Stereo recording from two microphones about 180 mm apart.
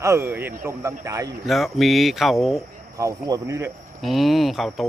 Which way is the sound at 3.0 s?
20° right (ahead or behind).